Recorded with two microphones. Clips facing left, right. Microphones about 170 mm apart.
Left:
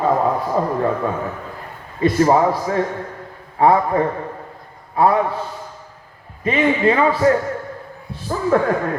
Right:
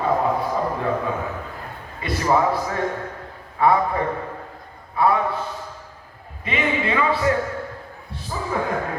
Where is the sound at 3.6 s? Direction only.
35° left (ahead or behind).